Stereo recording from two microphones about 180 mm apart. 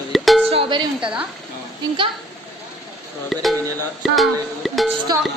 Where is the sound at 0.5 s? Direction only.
30° right (ahead or behind).